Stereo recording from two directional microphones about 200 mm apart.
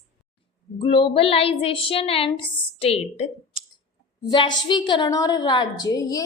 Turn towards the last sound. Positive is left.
turn(degrees=15)  # may be behind; listen again after turning